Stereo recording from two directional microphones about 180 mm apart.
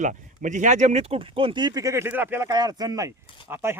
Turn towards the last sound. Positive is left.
turn(degrees=-15)  # may be behind; listen again after turning